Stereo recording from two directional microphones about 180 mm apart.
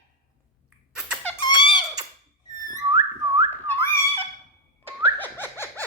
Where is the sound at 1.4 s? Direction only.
25° left (ahead or behind).